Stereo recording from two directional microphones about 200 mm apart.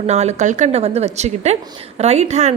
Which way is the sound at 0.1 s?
35° right (ahead or behind).